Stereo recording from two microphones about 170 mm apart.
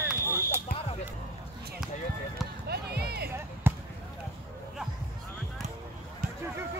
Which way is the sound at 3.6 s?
10° right (ahead or behind).